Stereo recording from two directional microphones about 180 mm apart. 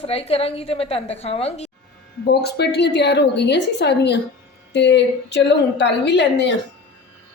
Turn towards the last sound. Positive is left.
turn(degrees=75)  # may be behind; listen again after turning